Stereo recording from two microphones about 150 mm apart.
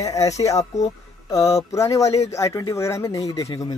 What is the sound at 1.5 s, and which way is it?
Speech, 20° left (ahead or behind).